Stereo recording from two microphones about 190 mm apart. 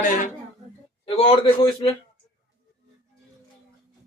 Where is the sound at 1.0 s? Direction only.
30° left (ahead or behind).